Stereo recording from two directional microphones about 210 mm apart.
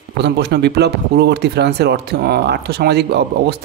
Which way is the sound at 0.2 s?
50° right (ahead or behind).